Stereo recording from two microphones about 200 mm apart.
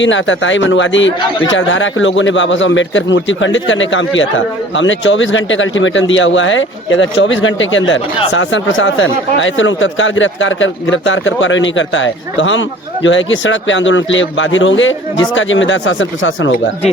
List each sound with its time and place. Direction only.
0.0 s speech: 70° left (ahead or behind)